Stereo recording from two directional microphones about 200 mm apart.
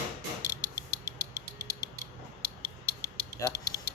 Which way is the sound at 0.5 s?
15° right (ahead or behind).